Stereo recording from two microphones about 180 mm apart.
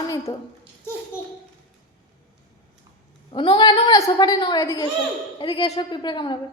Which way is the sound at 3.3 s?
25° left (ahead or behind).